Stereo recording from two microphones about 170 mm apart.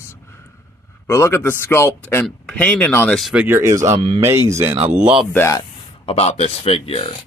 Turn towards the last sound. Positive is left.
turn(degrees=35)  # may be behind; listen again after turning